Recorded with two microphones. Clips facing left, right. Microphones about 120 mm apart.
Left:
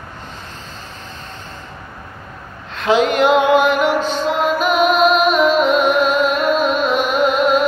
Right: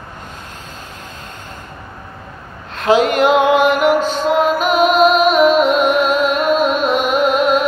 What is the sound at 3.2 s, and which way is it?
Music, centre (ahead or behind).